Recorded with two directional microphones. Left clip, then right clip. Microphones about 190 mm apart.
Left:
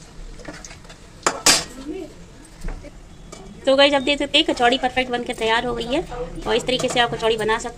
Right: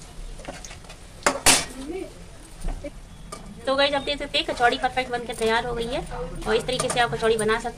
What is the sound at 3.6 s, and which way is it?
A woman's voice, 20° left (ahead or behind).